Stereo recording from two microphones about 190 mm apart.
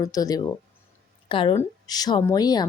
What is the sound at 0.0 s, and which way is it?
A woman's voice, 20° left (ahead or behind).